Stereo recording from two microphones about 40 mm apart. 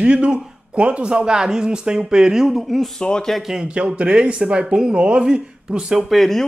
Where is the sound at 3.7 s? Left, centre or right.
Right.